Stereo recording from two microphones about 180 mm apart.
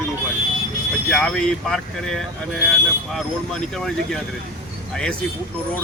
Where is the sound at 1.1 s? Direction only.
5° left (ahead or behind).